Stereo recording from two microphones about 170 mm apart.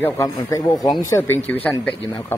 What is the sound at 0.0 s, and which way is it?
A man's voice, 20° left (ahead or behind).